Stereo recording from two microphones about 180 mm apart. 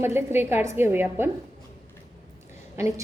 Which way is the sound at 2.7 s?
15° right (ahead or behind).